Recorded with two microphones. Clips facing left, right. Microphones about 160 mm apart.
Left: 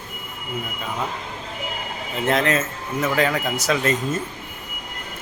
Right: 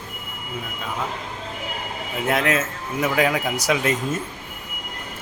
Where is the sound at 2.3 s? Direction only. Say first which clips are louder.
Left 1 dB; 5° right (ahead or behind).